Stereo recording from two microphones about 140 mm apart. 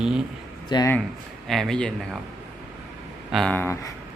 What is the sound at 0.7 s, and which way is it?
Speech, 35° left (ahead or behind).